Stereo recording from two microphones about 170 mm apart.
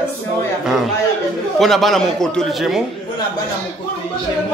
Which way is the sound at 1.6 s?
Centre (ahead or behind).